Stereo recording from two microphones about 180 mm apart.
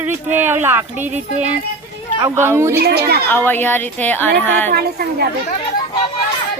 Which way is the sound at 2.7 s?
60° right (ahead or behind).